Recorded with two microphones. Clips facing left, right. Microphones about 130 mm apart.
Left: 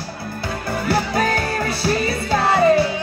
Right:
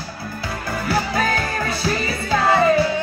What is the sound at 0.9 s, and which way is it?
Music, 30° left (ahead or behind).